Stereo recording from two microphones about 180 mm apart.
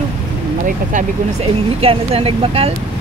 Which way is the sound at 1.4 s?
30° right (ahead or behind).